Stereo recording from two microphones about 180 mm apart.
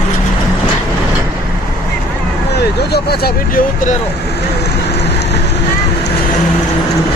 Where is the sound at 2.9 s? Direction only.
60° left (ahead or behind).